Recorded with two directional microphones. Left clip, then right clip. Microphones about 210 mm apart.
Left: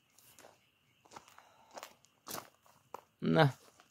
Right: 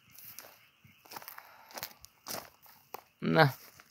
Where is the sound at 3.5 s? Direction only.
50° right (ahead or behind).